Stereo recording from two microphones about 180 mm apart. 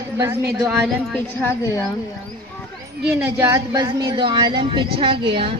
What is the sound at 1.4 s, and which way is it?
Speech, 15° left (ahead or behind).